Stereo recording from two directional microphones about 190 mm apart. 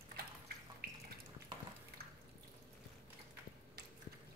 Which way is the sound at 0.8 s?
55° right (ahead or behind).